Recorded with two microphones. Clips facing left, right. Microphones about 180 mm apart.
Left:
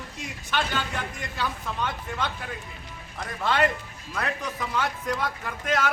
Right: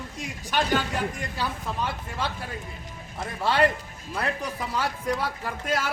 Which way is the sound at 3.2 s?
35° right (ahead or behind).